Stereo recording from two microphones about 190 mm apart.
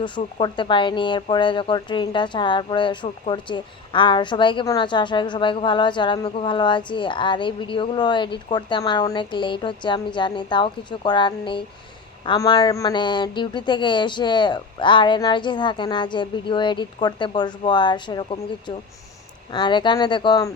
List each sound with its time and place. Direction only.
0.0 s speech: 25° left (ahead or behind)